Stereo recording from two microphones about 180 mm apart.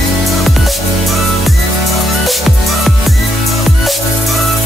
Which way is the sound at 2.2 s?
Centre (ahead or behind).